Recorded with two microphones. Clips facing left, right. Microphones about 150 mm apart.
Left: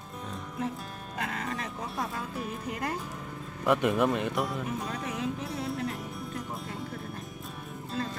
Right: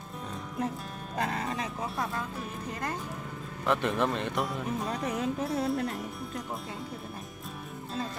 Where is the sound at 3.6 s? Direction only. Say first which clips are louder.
Left 3 dB; 10° left (ahead or behind).